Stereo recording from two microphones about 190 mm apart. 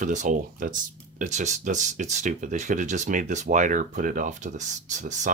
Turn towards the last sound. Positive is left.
turn(degrees=-40)  # may be behind; listen again after turning